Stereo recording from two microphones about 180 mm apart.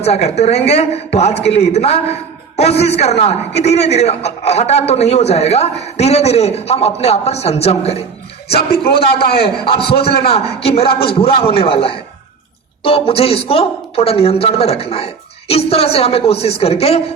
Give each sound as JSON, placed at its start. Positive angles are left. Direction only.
{"t": 0.0, "sound": "a man's voice", "side_deg": 35}
{"t": 9.4, "sound": "a man's voice", "side_deg": 30}